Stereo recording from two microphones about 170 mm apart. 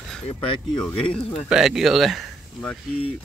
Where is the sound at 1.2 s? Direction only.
35° left (ahead or behind).